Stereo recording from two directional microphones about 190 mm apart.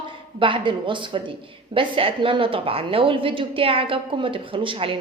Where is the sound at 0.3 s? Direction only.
25° right (ahead or behind).